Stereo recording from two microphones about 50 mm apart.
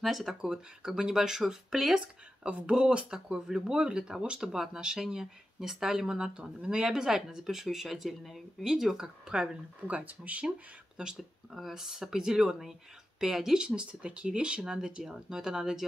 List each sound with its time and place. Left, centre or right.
0.0 s speech: centre
2.4 s speech: right
9.8 s speech: right
11.1 s speech: centre
13.7 s speech: right